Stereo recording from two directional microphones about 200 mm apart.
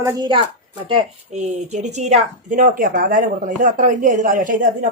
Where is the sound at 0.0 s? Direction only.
20° right (ahead or behind).